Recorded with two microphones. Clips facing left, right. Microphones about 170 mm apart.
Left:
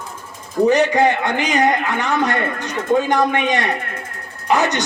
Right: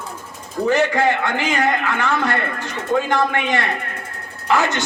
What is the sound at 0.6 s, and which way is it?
A man's voice, 20° left (ahead or behind).